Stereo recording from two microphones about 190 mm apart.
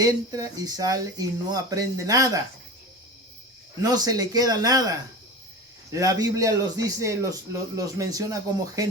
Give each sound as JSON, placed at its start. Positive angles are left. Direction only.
{"t": 0.0, "sound": "speech", "side_deg": -20}
{"t": 3.8, "sound": "a man's voice", "side_deg": -20}